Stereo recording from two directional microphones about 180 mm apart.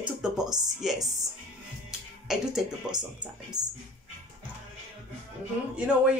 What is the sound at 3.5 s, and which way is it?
Speech, 20° right (ahead or behind).